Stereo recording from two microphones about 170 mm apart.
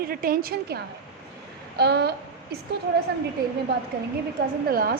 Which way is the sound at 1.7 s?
75° right (ahead or behind).